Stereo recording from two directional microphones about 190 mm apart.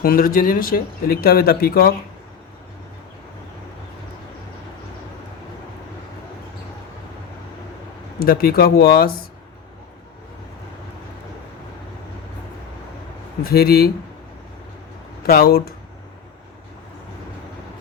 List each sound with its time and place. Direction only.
0.0 s speech: 50° left (ahead or behind)
8.2 s speech: 50° left (ahead or behind)
13.4 s speech: 55° left (ahead or behind)
15.3 s speech: 50° left (ahead or behind)